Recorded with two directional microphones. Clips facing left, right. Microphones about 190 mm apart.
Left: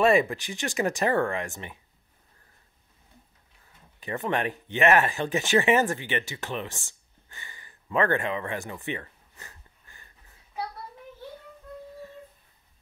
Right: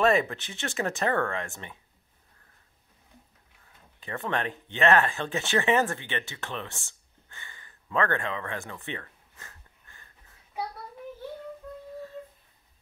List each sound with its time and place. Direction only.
0.0 s speech: 10° left (ahead or behind)
4.0 s speech: 15° left (ahead or behind)
7.2 s a sound: 15° left (ahead or behind)